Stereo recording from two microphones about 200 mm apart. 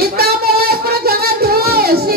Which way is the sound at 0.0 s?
50° right (ahead or behind).